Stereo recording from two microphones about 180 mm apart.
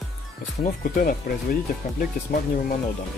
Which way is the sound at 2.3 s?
55° left (ahead or behind).